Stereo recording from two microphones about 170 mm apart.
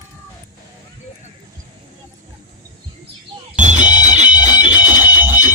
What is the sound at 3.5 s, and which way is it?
Music, 45° right (ahead or behind).